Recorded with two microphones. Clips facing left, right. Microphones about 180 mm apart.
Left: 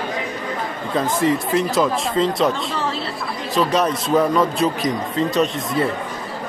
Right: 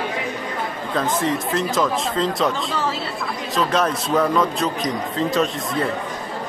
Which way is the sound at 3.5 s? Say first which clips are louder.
Left 2 dB; centre (ahead or behind).